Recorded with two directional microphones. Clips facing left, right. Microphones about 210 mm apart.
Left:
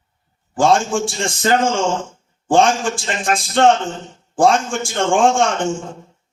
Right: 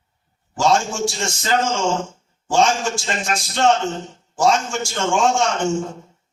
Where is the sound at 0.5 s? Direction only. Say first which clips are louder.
Left 3 dB; 55° left (ahead or behind).